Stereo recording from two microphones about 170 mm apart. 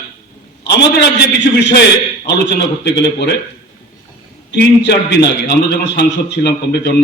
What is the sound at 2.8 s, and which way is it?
Speech, 75° left (ahead or behind).